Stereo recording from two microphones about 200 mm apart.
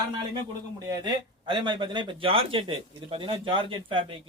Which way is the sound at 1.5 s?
25° right (ahead or behind).